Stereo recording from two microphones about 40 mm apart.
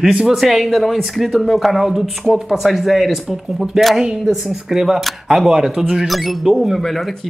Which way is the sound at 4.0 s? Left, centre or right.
Centre.